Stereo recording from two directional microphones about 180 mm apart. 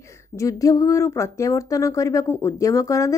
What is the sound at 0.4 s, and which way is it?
Speech, 20° left (ahead or behind).